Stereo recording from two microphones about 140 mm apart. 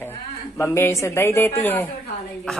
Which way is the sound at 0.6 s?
20° left (ahead or behind).